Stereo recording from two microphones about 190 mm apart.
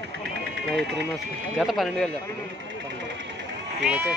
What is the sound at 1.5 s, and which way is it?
Speech, centre (ahead or behind).